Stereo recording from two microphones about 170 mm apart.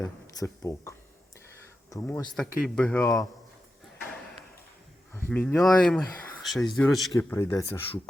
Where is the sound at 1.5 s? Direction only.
15° left (ahead or behind).